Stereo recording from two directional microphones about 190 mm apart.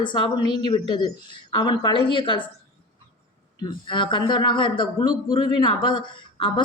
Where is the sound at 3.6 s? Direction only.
25° left (ahead or behind).